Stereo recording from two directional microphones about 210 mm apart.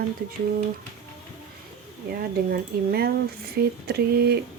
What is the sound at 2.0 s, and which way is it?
Speech, 45° right (ahead or behind).